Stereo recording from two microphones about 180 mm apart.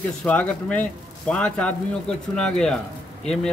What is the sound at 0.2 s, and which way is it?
Speech, 5° left (ahead or behind).